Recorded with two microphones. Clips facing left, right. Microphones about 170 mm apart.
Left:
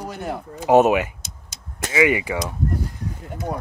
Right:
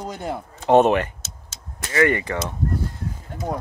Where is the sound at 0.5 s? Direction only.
5° left (ahead or behind).